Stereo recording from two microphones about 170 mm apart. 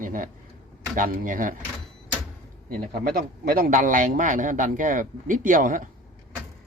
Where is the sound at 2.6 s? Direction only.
55° right (ahead or behind).